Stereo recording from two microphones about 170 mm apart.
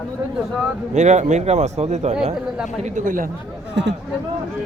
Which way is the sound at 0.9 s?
45° right (ahead or behind).